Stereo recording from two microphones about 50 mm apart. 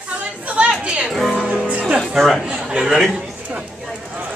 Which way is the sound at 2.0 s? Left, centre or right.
Centre.